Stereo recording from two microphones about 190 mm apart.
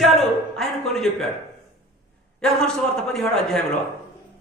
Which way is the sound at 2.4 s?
5° left (ahead or behind).